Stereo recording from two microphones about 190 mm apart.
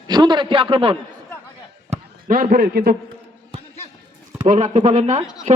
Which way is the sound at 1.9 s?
45° right (ahead or behind).